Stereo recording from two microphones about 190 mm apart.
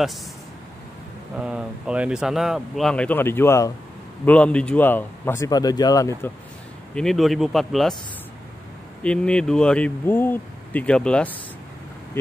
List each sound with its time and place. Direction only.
1.4 s a man's voice: 5° right (ahead or behind); by 6.3 s 15° left (ahead or behind)
7.0 s speech: centre (ahead or behind)
9.0 s speech: 5° left (ahead or behind)